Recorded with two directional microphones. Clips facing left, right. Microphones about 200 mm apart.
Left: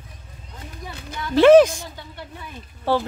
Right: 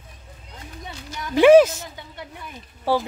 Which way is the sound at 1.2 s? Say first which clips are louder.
Left 1 dB; 15° right (ahead or behind).